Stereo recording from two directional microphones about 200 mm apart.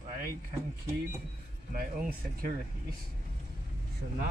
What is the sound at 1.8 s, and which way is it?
Speech, 45° right (ahead or behind).